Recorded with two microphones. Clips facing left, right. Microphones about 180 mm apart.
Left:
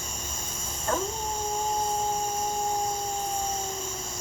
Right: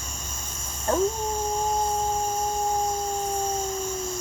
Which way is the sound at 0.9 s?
30° right (ahead or behind).